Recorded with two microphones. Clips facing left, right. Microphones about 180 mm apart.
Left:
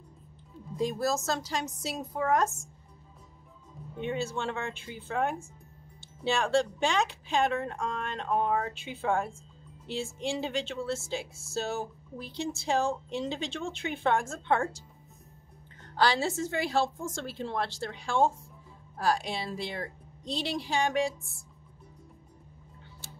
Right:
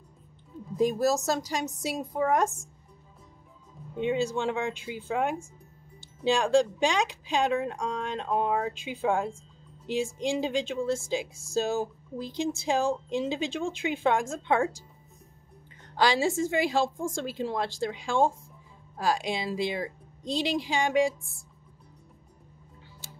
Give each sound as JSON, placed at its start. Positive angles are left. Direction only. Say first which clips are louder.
{"t": 0.7, "sound": "speech", "louder": "right 5 dB", "side_deg": -20}
{"t": 3.9, "sound": "speech", "louder": "right 5 dB", "side_deg": -15}
{"t": 16.0, "sound": "speech", "louder": "right 3 dB", "side_deg": -15}